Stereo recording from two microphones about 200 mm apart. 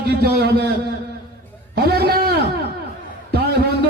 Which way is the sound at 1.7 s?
50° right (ahead or behind).